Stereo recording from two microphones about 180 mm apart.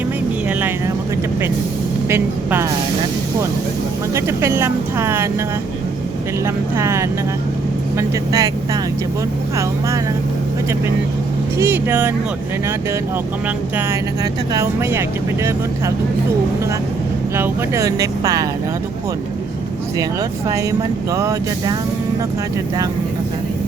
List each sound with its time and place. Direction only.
2.0 s speech: 15° right (ahead or behind)
4.1 s speech: 15° right (ahead or behind)
6.4 s speech: 15° right (ahead or behind)
11.5 s speech: 10° right (ahead or behind)
14.5 s speech: 15° right (ahead or behind)
17.3 s speech: 15° right (ahead or behind)
20.5 s speech: 20° right (ahead or behind)